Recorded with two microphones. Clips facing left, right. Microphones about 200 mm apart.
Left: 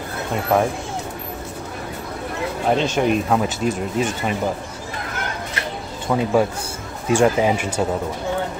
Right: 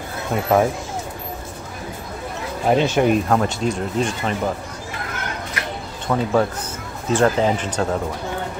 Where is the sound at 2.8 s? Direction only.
10° right (ahead or behind).